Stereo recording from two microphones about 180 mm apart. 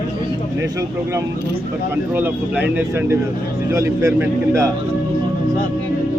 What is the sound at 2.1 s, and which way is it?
A man's voice, 10° right (ahead or behind).